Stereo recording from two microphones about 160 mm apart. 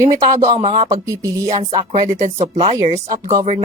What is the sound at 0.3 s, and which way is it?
Speech, 40° right (ahead or behind).